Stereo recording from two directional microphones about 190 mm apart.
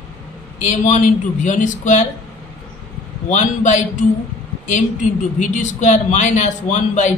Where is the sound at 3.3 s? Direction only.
40° left (ahead or behind).